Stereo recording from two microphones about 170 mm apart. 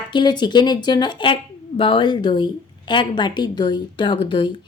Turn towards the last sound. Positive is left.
turn(degrees=30)  # may be behind; listen again after turning